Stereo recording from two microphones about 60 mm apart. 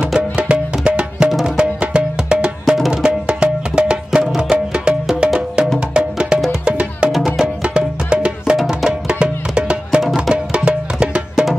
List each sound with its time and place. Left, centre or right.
0.4 s music: centre
10.0 s music: centre
10.3 s music: centre